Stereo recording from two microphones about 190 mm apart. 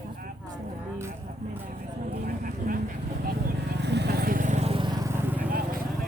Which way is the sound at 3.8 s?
65° right (ahead or behind).